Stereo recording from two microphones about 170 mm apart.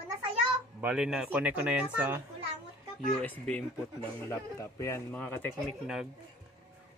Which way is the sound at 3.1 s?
5° left (ahead or behind).